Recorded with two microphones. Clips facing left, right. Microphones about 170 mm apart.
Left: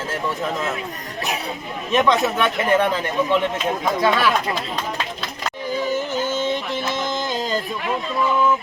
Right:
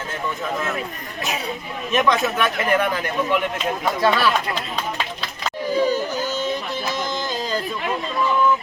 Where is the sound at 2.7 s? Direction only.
25° left (ahead or behind).